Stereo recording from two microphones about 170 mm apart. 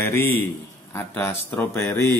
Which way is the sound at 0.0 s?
10° left (ahead or behind).